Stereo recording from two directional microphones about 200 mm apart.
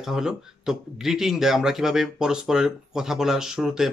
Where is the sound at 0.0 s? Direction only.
5° right (ahead or behind).